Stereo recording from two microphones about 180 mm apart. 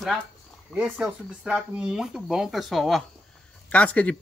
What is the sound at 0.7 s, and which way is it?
Speech, 5° right (ahead or behind).